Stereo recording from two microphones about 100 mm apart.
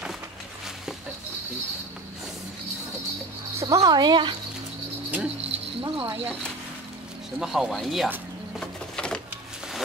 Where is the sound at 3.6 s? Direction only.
40° right (ahead or behind).